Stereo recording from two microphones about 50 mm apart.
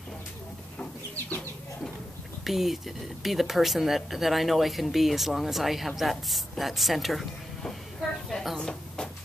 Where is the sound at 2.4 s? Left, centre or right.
Centre.